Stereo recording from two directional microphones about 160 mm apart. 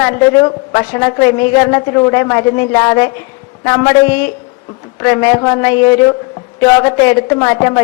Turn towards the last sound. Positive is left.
turn(degrees=20)  # may be behind; listen again after turning